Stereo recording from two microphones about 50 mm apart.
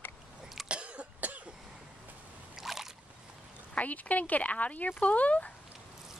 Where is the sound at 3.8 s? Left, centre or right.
Left.